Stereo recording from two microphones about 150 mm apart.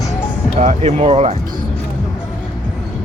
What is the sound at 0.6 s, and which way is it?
Speech, 50° right (ahead or behind).